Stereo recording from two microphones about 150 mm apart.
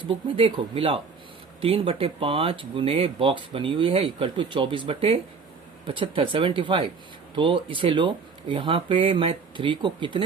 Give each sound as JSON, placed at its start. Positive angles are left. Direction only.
{"t": 0.1, "sound": "speech", "side_deg": -35}